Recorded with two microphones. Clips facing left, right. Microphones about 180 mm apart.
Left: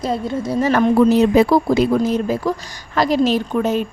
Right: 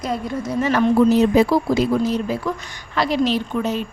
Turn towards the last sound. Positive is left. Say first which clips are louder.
# left 4 dB
turn(degrees=50)  # may be behind; listen again after turning